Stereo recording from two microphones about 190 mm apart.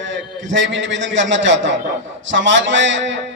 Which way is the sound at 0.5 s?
75° right (ahead or behind).